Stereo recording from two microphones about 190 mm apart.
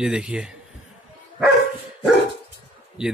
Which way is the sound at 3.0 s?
5° right (ahead or behind).